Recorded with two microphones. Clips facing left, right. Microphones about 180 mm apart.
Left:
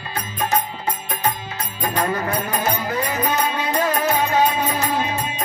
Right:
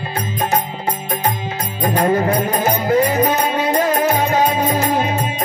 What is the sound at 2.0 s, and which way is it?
Music, 35° right (ahead or behind).